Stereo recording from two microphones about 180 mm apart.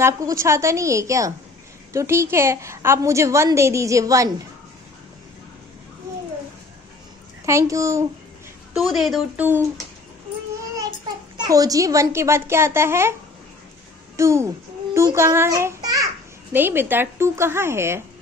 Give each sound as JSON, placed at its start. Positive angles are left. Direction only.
{"t": 0.0, "sound": "a woman's voice", "side_deg": -15}
{"t": 7.4, "sound": "a woman's voice", "side_deg": -15}
{"t": 8.7, "sound": "a woman's voice", "side_deg": 0}
{"t": 11.3, "sound": "a woman's voice", "side_deg": -20}
{"t": 14.1, "sound": "a woman's voice", "side_deg": -15}